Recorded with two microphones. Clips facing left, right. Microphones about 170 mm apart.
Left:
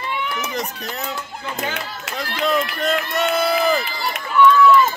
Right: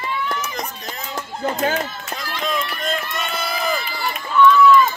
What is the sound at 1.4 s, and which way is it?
Speech, 45° right (ahead or behind).